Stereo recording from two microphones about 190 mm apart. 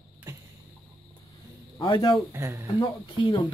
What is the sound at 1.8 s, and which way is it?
Speech, 20° left (ahead or behind).